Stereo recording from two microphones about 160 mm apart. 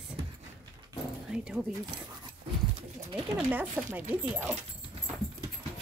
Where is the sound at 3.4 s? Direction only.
15° right (ahead or behind).